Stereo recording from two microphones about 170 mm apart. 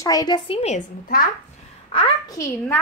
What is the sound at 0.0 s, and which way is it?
Speech, 20° left (ahead or behind).